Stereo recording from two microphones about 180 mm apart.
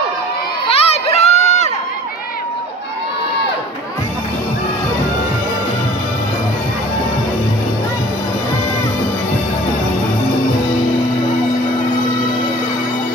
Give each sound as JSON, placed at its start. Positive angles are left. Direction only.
{"t": 0.7, "sound": "run", "side_deg": 35}